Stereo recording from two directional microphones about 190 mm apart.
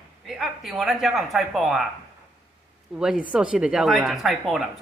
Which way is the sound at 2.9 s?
5° right (ahead or behind).